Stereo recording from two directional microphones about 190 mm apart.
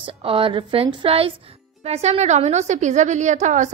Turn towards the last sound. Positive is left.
turn(degrees=-40)  # may be behind; listen again after turning